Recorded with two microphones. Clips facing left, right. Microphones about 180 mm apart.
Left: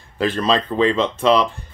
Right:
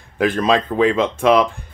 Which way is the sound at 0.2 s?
15° right (ahead or behind).